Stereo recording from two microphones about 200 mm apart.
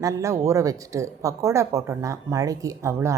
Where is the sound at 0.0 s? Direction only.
15° right (ahead or behind).